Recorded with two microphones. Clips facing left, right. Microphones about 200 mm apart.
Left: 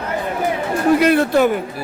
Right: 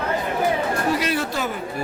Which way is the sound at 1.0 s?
55° left (ahead or behind).